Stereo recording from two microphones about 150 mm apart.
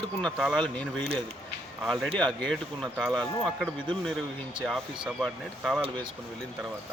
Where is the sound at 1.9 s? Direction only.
Centre (ahead or behind).